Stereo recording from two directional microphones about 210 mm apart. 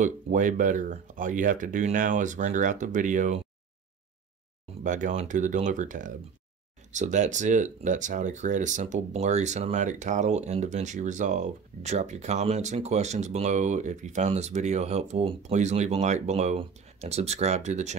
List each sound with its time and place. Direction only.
0.0 s speech: 40° right (ahead or behind)
4.8 s speech: 35° right (ahead or behind)